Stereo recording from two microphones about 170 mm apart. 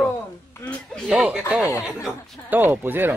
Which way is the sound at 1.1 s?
5° right (ahead or behind).